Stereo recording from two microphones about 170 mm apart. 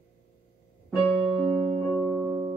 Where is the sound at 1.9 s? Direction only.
10° right (ahead or behind).